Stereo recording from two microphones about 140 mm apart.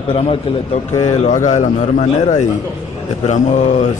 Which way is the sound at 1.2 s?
60° left (ahead or behind).